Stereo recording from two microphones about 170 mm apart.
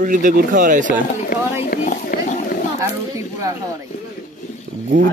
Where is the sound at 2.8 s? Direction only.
20° right (ahead or behind).